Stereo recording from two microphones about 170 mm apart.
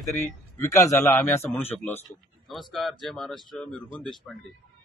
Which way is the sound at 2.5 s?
Centre (ahead or behind).